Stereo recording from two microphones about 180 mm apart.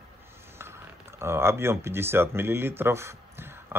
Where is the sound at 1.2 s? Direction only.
15° right (ahead or behind).